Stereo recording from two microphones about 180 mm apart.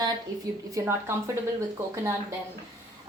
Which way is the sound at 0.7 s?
15° right (ahead or behind).